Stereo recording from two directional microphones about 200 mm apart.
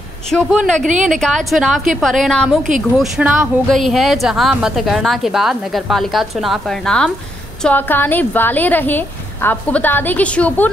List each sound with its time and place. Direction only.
0.3 s a woman's voice: centre (ahead or behind)